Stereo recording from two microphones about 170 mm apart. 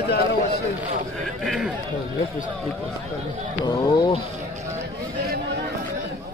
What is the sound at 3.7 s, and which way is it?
Speech, 20° left (ahead or behind).